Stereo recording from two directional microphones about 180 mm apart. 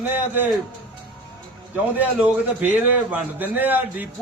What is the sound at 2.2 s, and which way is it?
Speech, 10° right (ahead or behind).